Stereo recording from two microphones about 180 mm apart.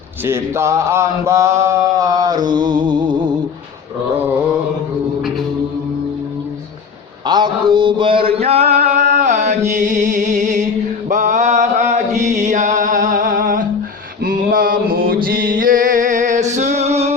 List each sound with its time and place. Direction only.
0.3 s mantra: 15° right (ahead or behind)
7.3 s a sound: 25° right (ahead or behind)
8.8 s carnatic music: 40° right (ahead or behind)
9.1 s music: 40° right (ahead or behind)
11.1 s mantra: 40° right (ahead or behind)